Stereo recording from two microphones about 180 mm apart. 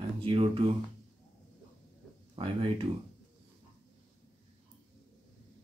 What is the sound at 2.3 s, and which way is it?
Speech, 30° right (ahead or behind).